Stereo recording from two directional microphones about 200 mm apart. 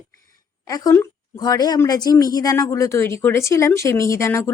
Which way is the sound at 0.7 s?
15° left (ahead or behind).